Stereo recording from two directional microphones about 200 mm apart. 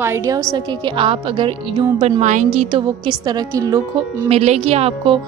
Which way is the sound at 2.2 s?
35° right (ahead or behind).